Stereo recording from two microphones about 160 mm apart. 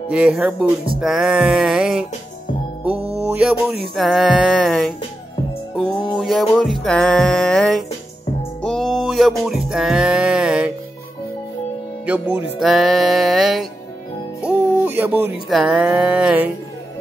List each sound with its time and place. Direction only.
0.1 s music: 5° right (ahead or behind)
3.0 s music: 40° right (ahead or behind)
3.3 s speech: 5° right (ahead or behind)
3.9 s music: centre (ahead or behind)
6.1 s music: centre (ahead or behind)
12.1 s speech: 10° right (ahead or behind)
12.5 s music: centre (ahead or behind)
14.4 s music: 10° right (ahead or behind)
15.5 s music: centre (ahead or behind)